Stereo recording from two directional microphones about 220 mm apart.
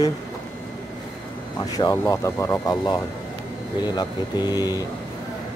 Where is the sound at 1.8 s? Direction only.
15° left (ahead or behind).